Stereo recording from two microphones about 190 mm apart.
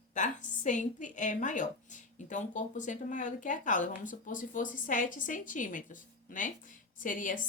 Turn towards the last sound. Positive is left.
turn(degrees=45)  # may be behind; listen again after turning